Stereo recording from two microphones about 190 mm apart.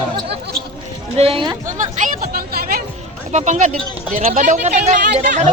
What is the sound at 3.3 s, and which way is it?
Speech, 40° right (ahead or behind).